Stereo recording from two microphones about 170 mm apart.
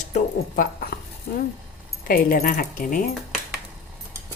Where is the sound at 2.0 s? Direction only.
60° left (ahead or behind).